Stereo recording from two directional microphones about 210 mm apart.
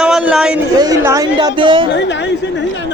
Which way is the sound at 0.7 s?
15° right (ahead or behind).